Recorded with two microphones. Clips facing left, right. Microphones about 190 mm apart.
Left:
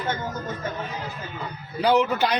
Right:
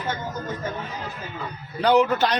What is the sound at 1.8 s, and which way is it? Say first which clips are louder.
Speech: right 2 dB; 10° left (ahead or behind).